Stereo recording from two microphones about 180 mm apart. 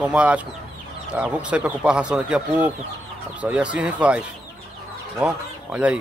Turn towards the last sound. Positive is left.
turn(degrees=-5)  # may be behind; listen again after turning